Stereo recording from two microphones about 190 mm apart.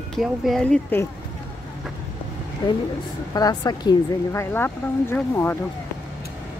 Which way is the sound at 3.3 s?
20° left (ahead or behind).